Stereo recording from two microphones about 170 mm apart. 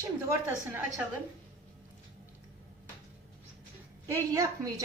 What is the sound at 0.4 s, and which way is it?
Speech, 15° right (ahead or behind).